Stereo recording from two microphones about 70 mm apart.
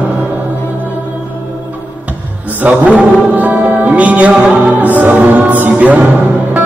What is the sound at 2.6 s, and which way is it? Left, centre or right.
Mantra, right.